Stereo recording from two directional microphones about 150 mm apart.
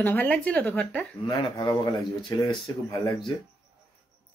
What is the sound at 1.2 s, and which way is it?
Speech, 30° left (ahead or behind).